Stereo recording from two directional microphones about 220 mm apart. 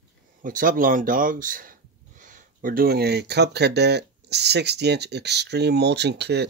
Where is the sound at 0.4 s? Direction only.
40° right (ahead or behind).